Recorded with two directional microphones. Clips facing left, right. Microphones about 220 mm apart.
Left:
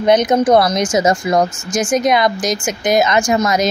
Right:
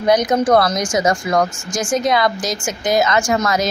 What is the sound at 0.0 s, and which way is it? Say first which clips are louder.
Speech: left 3 dB; 25° left (ahead or behind).